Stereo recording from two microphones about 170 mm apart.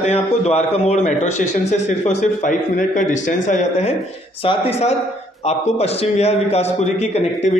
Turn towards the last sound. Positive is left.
turn(degrees=40)  # may be behind; listen again after turning